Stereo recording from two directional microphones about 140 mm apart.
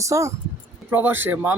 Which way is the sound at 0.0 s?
20° right (ahead or behind).